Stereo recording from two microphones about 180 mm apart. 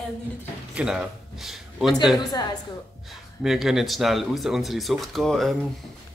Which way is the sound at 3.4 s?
Centre (ahead or behind).